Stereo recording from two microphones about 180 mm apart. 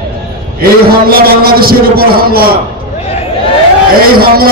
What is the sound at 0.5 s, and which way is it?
A man's voice, 55° right (ahead or behind).